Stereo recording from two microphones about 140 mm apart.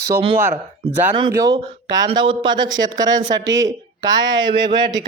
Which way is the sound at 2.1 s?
35° right (ahead or behind).